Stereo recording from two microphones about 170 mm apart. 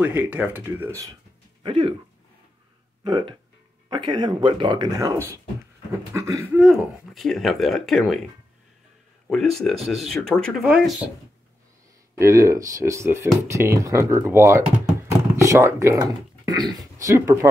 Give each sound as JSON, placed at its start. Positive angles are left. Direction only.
{"t": 0.0, "sound": "speech", "side_deg": -10}
{"t": 1.6, "sound": "speech", "side_deg": -30}
{"t": 3.0, "sound": "speech", "side_deg": -25}
{"t": 6.6, "sound": "speech", "side_deg": 0}
{"t": 9.3, "sound": "speech", "side_deg": 0}
{"t": 12.2, "sound": "speech", "side_deg": -15}
{"t": 15.0, "sound": "a sound", "side_deg": -15}
{"t": 16.5, "sound": "speech", "side_deg": -25}